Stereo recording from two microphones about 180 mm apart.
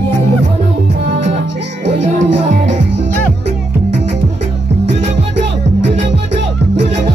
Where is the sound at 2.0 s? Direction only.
40° right (ahead or behind).